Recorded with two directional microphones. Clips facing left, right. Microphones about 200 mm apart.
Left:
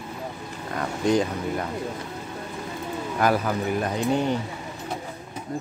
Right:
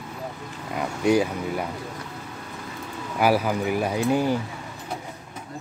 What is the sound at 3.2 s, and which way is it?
Speech, 10° right (ahead or behind).